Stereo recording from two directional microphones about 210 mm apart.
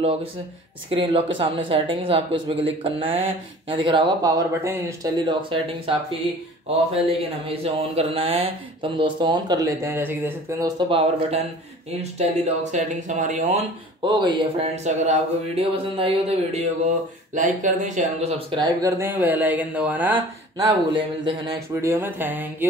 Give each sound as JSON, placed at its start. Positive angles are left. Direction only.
{"t": 0.0, "sound": "speech", "side_deg": -25}
{"t": 7.1, "sound": "speech", "side_deg": -25}
{"t": 10.9, "sound": "speech", "side_deg": -25}
{"t": 12.0, "sound": "a sound", "side_deg": -30}
{"t": 14.0, "sound": "speech", "side_deg": -20}
{"t": 15.0, "sound": "a sound", "side_deg": -30}
{"t": 18.5, "sound": "speech", "side_deg": -20}